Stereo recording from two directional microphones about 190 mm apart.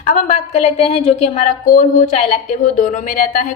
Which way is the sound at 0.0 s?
40° left (ahead or behind).